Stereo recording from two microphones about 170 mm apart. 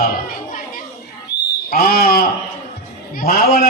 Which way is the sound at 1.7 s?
60° left (ahead or behind).